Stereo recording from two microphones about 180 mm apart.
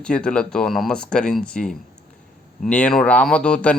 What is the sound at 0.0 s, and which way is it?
Speech, 5° left (ahead or behind).